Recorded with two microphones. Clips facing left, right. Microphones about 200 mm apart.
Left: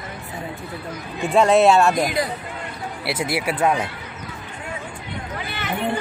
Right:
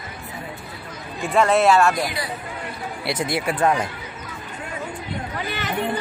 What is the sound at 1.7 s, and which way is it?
Speech, 20° left (ahead or behind).